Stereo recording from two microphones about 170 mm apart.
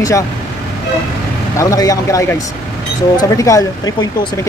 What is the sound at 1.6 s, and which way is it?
Speech, 20° left (ahead or behind).